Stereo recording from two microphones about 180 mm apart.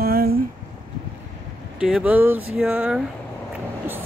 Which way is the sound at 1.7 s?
5° right (ahead or behind).